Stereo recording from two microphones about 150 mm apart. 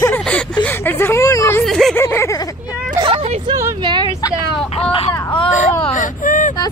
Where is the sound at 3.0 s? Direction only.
40° right (ahead or behind).